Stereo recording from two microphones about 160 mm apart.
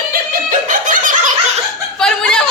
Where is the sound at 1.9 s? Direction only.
5° left (ahead or behind).